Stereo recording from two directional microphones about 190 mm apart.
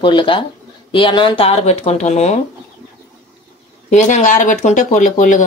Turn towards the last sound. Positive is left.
turn(degrees=40)  # may be behind; listen again after turning